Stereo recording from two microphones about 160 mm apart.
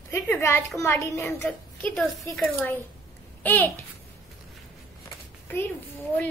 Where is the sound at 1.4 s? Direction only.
5° left (ahead or behind).